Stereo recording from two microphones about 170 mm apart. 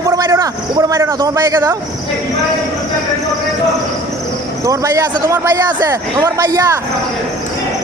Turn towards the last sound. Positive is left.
turn(degrees=-20)  # may be behind; listen again after turning